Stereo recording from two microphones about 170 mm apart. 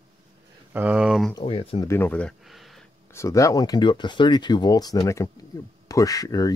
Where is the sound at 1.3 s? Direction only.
35° left (ahead or behind).